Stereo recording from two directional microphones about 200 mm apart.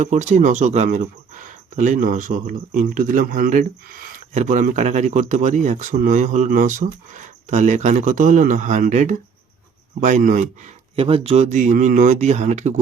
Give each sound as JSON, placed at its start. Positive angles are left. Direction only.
{"t": 0.0, "sound": "speech", "side_deg": -35}